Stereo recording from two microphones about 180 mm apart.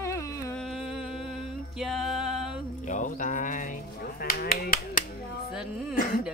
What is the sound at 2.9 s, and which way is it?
Mantra, 45° left (ahead or behind).